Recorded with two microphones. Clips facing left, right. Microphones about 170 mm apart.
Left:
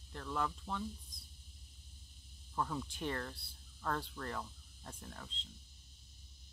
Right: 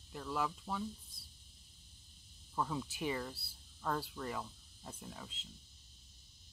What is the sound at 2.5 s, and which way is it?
Speech, 5° right (ahead or behind).